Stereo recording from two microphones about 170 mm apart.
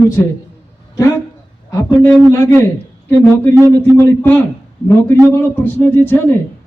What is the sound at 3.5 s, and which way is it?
Speech, 15° right (ahead or behind).